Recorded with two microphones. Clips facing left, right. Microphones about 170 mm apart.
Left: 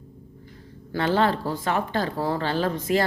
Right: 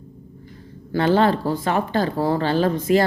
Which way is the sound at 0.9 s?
40° right (ahead or behind).